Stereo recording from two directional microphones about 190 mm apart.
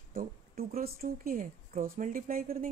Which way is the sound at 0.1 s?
50° right (ahead or behind).